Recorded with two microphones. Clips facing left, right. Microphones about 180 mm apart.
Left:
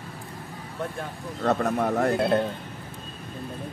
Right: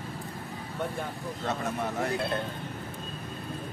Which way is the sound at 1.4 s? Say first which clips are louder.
Left 9 dB; 60° left (ahead or behind).